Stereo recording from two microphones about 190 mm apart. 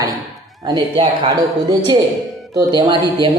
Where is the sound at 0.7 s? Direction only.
20° right (ahead or behind).